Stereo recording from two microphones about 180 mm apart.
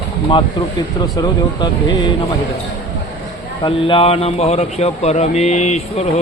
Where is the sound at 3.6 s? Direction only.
30° left (ahead or behind).